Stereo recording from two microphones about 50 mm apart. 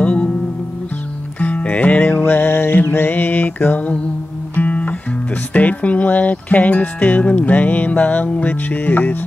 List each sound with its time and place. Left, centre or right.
0.0 s music: left
1.4 s music: left